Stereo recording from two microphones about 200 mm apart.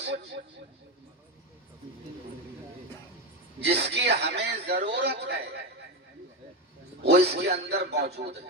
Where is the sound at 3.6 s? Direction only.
55° right (ahead or behind).